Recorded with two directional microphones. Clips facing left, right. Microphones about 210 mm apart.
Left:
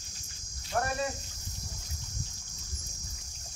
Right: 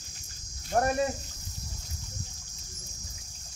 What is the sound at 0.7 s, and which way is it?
Speech, 35° right (ahead or behind).